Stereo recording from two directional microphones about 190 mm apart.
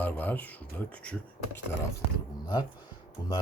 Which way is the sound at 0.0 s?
10° left (ahead or behind).